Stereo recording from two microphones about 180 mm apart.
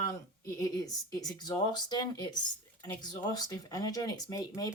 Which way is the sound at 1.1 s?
20° left (ahead or behind).